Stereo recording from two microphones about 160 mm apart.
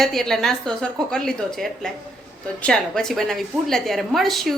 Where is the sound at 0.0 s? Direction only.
Centre (ahead or behind).